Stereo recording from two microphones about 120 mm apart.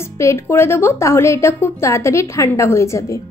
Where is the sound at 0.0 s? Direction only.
25° left (ahead or behind).